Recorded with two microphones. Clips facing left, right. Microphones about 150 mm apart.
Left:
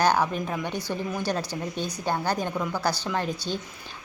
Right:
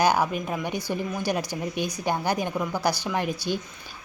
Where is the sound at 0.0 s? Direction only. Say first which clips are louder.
Right 1 dB; 10° right (ahead or behind).